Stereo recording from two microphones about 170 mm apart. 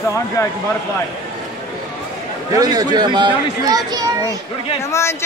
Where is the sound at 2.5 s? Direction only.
20° right (ahead or behind).